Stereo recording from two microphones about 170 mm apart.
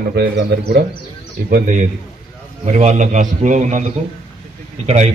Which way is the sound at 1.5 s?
50° right (ahead or behind).